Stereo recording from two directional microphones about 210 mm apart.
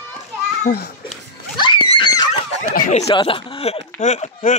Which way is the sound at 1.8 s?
25° left (ahead or behind).